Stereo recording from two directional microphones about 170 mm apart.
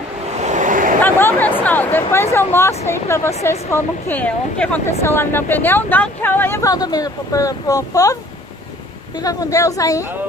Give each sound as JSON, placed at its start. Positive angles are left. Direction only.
{"t": 0.4, "sound": "a sound", "side_deg": -45}
{"t": 1.0, "sound": "chatter", "side_deg": 10}
{"t": 2.3, "sound": "speech", "side_deg": 15}
{"t": 9.2, "sound": "a woman's voice", "side_deg": 20}